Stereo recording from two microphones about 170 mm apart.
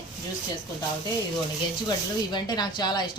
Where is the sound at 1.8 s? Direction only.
25° left (ahead or behind).